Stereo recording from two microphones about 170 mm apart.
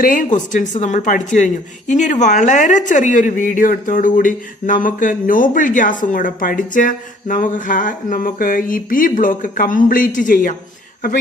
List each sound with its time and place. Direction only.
0.0 s a woman's voice: 50° left (ahead or behind)